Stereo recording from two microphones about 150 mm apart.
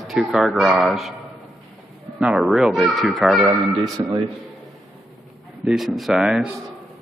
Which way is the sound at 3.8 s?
25° right (ahead or behind).